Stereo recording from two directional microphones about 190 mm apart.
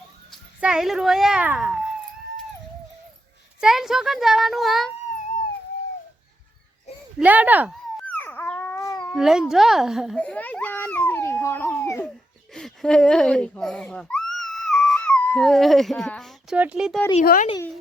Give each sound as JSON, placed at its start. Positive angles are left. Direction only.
{"t": 0.3, "sound": "a child's voice", "side_deg": -5}
{"t": 3.6, "sound": "a child's voice", "side_deg": 0}
{"t": 7.2, "sound": "speech", "side_deg": -10}
{"t": 8.0, "sound": "dog", "side_deg": 10}
{"t": 9.1, "sound": "a child's voice", "side_deg": 0}
{"t": 17.2, "sound": "speech", "side_deg": 45}